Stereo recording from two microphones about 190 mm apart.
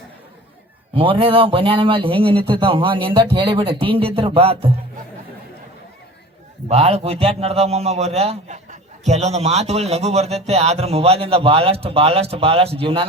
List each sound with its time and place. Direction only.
0.9 s a man's voice: 25° right (ahead or behind)
6.7 s a man's voice: 30° right (ahead or behind)